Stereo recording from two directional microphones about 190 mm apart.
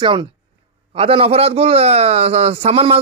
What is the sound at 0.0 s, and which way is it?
A man's voice, 25° right (ahead or behind).